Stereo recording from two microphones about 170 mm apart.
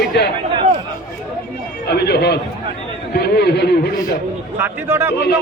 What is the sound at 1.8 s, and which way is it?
Speech, 75° left (ahead or behind).